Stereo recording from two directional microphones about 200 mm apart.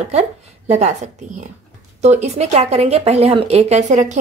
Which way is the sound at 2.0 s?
35° right (ahead or behind).